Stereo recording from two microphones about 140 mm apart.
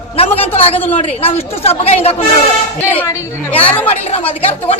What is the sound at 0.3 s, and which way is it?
Speech, 45° left (ahead or behind).